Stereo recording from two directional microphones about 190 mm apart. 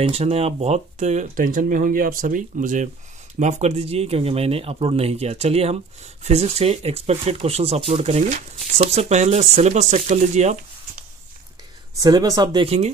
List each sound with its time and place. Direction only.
0.0 s speech: 35° right (ahead or behind)
12.0 s speech: 20° right (ahead or behind)